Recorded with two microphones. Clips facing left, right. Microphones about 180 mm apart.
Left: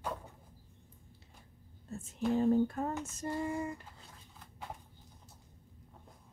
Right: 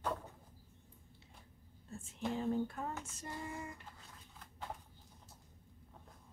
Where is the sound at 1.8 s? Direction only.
40° left (ahead or behind).